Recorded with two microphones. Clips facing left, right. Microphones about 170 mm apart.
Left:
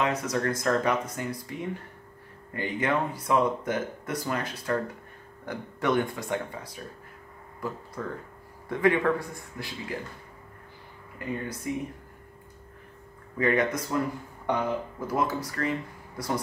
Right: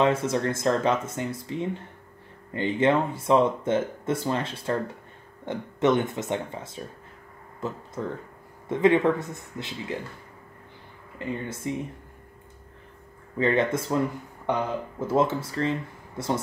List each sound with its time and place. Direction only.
0.0 s speech: 25° right (ahead or behind)
8.0 s speech: 25° right (ahead or behind)
11.1 s speech: 25° right (ahead or behind)
13.4 s speech: 25° right (ahead or behind)
15.0 s speech: 25° right (ahead or behind)